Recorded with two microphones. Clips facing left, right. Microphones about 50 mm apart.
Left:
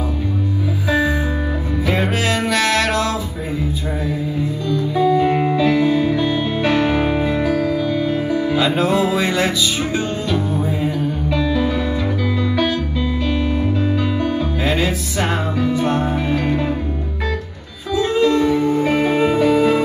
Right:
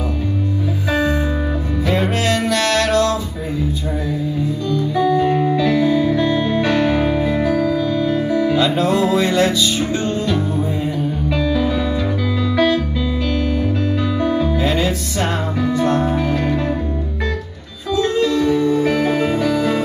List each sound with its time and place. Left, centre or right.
1.9 s music: centre
5.2 s music: left
5.6 s music: centre
6.8 s music: left
7.4 s music: centre
11.3 s music: left
14.2 s music: centre
17.9 s music: centre
18.7 s music: left